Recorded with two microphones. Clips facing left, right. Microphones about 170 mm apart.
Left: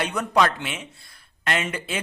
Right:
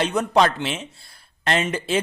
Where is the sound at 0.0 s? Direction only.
25° right (ahead or behind).